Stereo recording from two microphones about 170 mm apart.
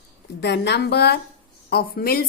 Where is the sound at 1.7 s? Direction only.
65° left (ahead or behind).